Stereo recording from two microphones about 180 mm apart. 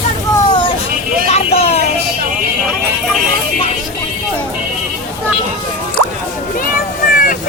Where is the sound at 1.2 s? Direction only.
35° left (ahead or behind).